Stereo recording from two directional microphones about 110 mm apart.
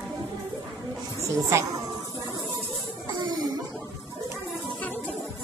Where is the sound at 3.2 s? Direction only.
40° right (ahead or behind).